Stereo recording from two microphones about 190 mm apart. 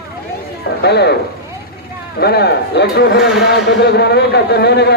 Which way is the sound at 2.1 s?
55° left (ahead or behind).